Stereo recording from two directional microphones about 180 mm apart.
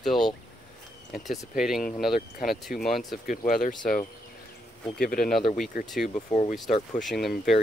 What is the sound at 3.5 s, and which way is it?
Speech, 50° left (ahead or behind).